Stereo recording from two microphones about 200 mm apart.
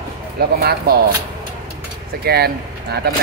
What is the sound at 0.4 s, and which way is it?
Speech, 50° right (ahead or behind).